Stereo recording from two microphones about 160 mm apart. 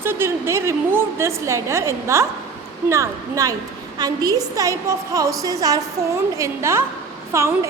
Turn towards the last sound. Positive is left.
turn(degrees=-15)  # may be behind; listen again after turning